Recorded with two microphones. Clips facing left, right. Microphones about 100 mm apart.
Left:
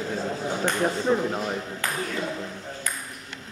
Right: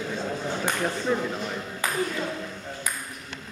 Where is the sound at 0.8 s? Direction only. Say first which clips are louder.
Left 4 dB; 20° left (ahead or behind).